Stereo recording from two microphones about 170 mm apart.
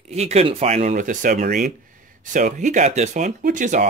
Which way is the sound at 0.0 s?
40° right (ahead or behind).